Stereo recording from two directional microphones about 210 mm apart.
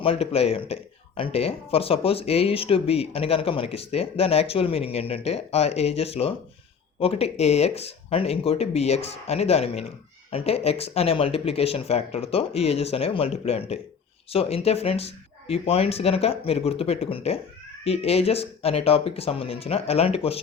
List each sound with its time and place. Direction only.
0.0 s speech: 25° left (ahead or behind)